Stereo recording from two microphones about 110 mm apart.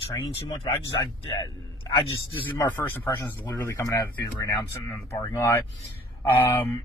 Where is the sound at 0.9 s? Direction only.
35° left (ahead or behind).